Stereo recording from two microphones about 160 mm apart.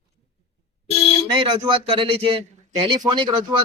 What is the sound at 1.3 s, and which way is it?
Speech, 30° right (ahead or behind).